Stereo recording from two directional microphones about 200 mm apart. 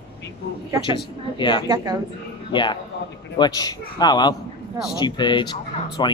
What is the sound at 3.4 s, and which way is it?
Speech, 20° left (ahead or behind).